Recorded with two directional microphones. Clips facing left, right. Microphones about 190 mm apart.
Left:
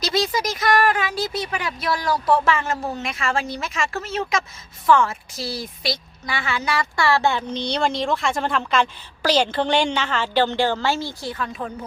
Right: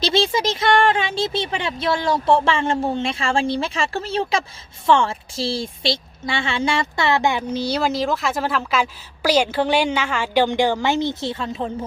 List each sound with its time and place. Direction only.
0.0 s a woman's voice: 25° right (ahead or behind)